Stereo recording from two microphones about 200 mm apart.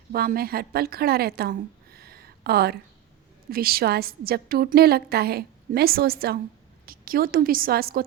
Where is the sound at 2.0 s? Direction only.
50° right (ahead or behind).